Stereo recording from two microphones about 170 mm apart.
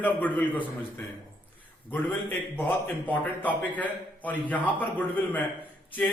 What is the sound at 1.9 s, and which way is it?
A man's voice, 10° left (ahead or behind).